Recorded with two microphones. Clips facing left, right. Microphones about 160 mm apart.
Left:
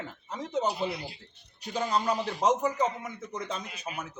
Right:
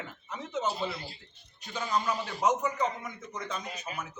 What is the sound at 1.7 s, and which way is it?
A man's voice, 35° left (ahead or behind).